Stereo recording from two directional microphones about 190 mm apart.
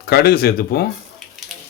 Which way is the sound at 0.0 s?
55° left (ahead or behind).